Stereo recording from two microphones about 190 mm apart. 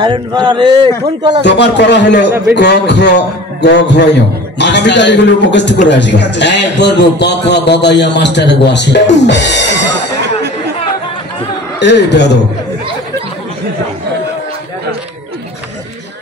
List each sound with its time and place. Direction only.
0.0 s speech: 25° right (ahead or behind)
1.4 s a man's voice: 65° left (ahead or behind)
11.8 s a man's voice: 65° left (ahead or behind)